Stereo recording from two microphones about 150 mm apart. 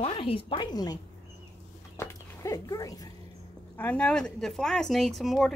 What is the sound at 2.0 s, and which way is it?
Dog, 25° left (ahead or behind).